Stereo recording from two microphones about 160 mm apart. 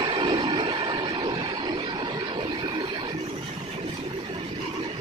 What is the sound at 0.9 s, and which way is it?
Vehicle, 20° right (ahead or behind).